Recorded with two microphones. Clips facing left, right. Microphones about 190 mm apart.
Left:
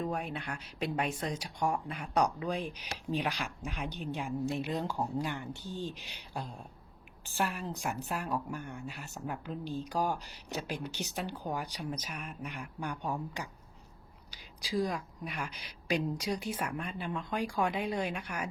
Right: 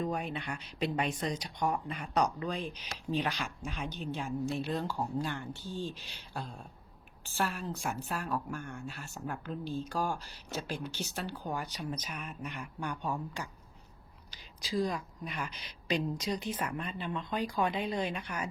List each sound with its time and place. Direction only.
0.0 s a woman's voice: 5° left (ahead or behind)
13.0 s a woman's voice: 15° left (ahead or behind)
14.6 s a woman's voice: 15° left (ahead or behind)